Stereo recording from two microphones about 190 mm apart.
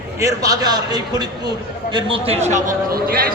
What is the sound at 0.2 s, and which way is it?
A man's voice, 15° right (ahead or behind).